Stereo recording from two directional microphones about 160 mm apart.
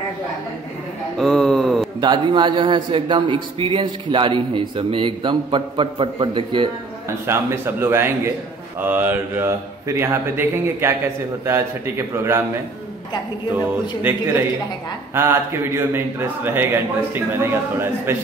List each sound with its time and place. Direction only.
1.1 s a sound: centre (ahead or behind)
2.0 s a man's voice: 30° right (ahead or behind)
7.2 s a man's voice: 15° right (ahead or behind)
14.0 s a man's voice: 15° right (ahead or behind)